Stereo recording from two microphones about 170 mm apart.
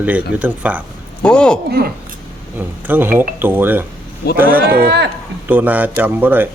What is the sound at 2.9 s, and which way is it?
Speech, 10° right (ahead or behind).